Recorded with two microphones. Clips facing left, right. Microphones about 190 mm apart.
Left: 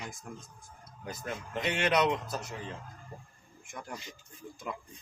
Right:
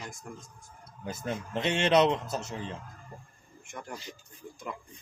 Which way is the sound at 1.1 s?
25° right (ahead or behind).